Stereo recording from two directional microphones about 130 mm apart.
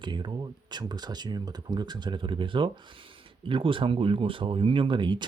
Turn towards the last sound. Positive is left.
turn(degrees=-40)  # may be behind; listen again after turning